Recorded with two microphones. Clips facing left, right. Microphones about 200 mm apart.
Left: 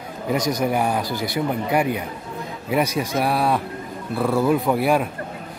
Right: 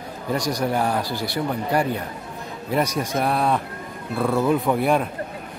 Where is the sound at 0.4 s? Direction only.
20° left (ahead or behind); by 5.0 s centre (ahead or behind).